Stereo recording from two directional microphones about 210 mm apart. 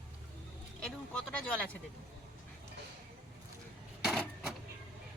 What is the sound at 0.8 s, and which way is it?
Speech, 5° left (ahead or behind).